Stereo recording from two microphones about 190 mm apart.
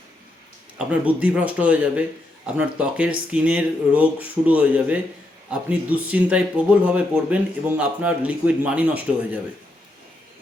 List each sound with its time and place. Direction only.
0.8 s speech: 5° right (ahead or behind)